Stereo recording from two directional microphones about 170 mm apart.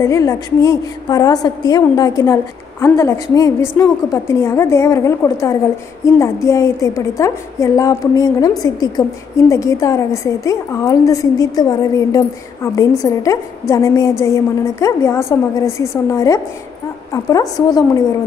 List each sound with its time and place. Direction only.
0.0 s a woman's voice: 20° left (ahead or behind)